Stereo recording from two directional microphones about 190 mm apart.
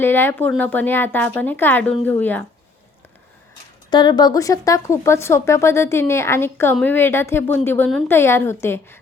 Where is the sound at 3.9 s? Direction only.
25° left (ahead or behind).